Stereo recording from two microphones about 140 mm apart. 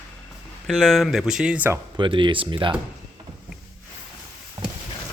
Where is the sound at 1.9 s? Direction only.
35° right (ahead or behind).